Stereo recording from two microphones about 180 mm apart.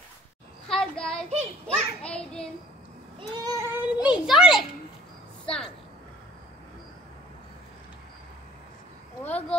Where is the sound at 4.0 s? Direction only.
5° right (ahead or behind).